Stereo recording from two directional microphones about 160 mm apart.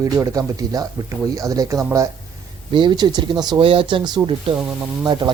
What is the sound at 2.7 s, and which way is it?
Speech, 30° right (ahead or behind).